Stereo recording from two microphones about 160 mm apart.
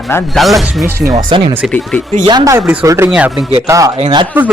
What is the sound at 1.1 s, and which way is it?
Speech, 30° right (ahead or behind).